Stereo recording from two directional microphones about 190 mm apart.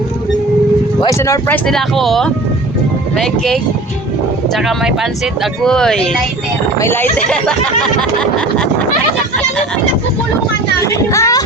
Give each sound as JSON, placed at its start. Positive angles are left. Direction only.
{"t": 1.0, "sound": "speech", "side_deg": 15}
{"t": 10.8, "sound": "speech", "side_deg": 15}